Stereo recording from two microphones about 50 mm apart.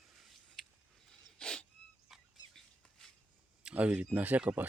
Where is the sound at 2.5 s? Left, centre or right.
Centre.